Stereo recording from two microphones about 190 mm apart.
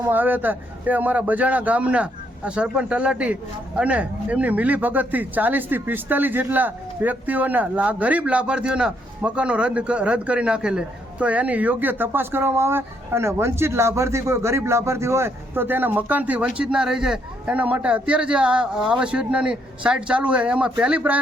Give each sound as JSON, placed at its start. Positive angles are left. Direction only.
{"t": 0.0, "sound": "a man's voice", "side_deg": -10}